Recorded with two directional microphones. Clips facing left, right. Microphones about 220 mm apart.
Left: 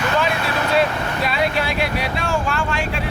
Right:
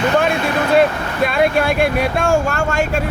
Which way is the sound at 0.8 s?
50° right (ahead or behind).